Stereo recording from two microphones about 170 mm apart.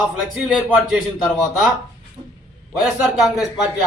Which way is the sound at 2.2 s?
25° right (ahead or behind).